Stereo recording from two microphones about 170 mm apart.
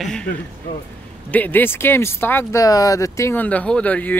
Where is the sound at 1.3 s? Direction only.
10° left (ahead or behind).